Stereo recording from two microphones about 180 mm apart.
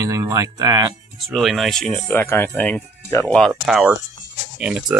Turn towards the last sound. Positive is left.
turn(degrees=-5)  # may be behind; listen again after turning